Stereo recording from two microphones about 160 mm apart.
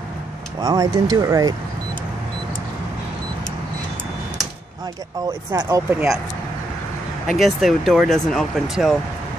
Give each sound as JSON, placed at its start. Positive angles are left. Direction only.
{"t": 0.6, "sound": "speech", "side_deg": -25}
{"t": 5.5, "sound": "speech", "side_deg": -20}
{"t": 7.3, "sound": "speech", "side_deg": 0}